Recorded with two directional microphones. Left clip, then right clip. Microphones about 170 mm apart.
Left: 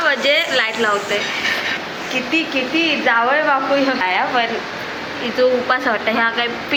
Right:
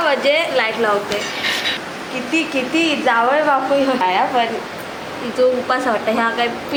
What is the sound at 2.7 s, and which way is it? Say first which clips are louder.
A woman's voice: even; 20° right (ahead or behind).